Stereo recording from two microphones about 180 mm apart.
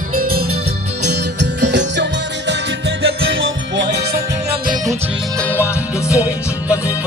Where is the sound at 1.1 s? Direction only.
75° right (ahead or behind).